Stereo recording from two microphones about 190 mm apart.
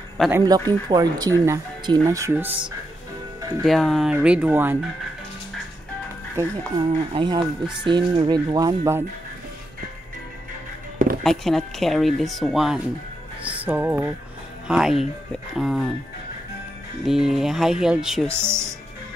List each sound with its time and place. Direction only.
0.3 s speech: 20° right (ahead or behind)
3.6 s speech: centre (ahead or behind)
6.3 s speech: 25° right (ahead or behind)
11.2 s speech: centre (ahead or behind)
17.0 s speech: centre (ahead or behind)
18.3 s speech: 15° right (ahead or behind)